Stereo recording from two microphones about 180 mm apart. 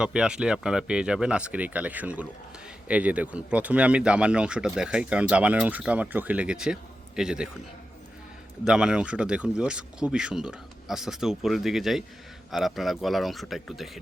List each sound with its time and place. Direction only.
0.0 s speech: 5° right (ahead or behind)
8.6 s speech: 5° right (ahead or behind)